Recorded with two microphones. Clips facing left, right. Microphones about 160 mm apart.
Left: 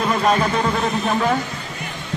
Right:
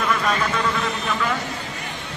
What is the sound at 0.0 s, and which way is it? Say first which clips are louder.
Speech: left 4 dB; 35° left (ahead or behind).